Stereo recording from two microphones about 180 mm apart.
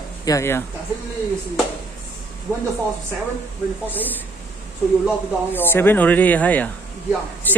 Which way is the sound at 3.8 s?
10° left (ahead or behind).